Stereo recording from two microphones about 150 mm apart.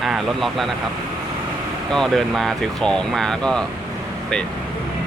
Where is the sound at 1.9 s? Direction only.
Centre (ahead or behind).